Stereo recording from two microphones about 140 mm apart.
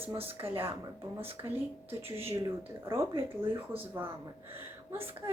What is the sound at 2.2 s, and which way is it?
Speech, 20° right (ahead or behind).